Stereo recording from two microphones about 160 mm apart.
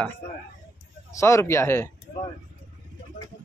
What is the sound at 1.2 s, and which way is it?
Speech, 20° left (ahead or behind).